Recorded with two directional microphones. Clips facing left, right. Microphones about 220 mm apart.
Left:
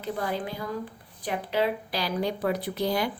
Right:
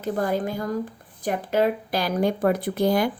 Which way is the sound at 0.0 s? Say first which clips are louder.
Right 6 dB; 45° right (ahead or behind).